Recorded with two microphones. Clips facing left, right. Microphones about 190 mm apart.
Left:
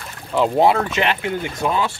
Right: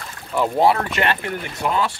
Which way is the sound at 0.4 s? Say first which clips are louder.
Left 2 dB; 20° left (ahead or behind).